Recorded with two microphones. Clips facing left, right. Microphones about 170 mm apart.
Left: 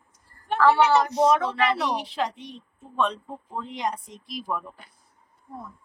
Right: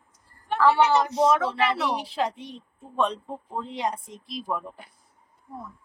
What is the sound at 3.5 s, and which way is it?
Speech, 25° right (ahead or behind).